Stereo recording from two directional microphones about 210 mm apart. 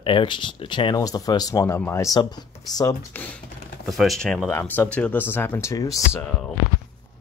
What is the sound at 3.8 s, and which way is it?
Speech, centre (ahead or behind).